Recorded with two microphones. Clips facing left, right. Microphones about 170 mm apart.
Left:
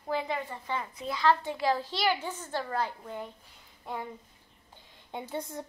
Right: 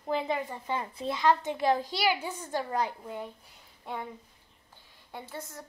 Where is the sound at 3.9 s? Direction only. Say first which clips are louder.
Even; centre (ahead or behind).